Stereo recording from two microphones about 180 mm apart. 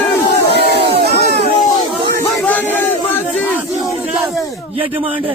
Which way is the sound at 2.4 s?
10° left (ahead or behind).